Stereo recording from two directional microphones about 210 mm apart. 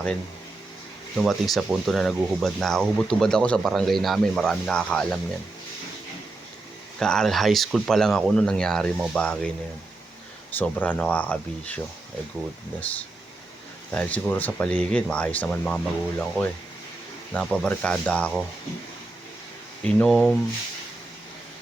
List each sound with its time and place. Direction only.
1.1 s speech: centre (ahead or behind)
7.0 s speech: 5° left (ahead or behind)
10.6 s speech: 10° left (ahead or behind)
12.8 s speech: 5° left (ahead or behind)
20.0 s speech: centre (ahead or behind)